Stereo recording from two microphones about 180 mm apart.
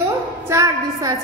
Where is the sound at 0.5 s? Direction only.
20° right (ahead or behind).